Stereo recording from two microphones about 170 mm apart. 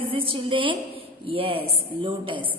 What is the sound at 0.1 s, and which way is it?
A woman's voice, 30° right (ahead or behind).